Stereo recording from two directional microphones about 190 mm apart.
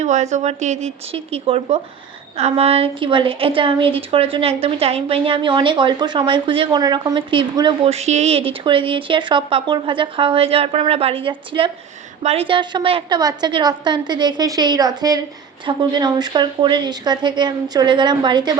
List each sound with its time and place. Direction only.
0.0 s a woman's voice: 40° right (ahead or behind)